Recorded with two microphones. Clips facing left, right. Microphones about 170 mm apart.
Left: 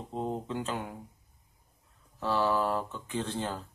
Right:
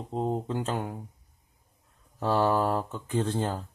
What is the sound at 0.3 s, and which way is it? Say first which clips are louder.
Speech: right 3 dB; 40° right (ahead or behind).